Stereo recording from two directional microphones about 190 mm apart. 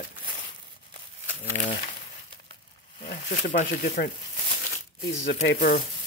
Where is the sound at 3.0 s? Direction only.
45° left (ahead or behind).